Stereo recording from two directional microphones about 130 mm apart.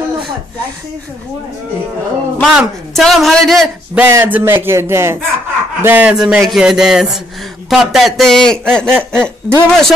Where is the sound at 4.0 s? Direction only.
15° right (ahead or behind).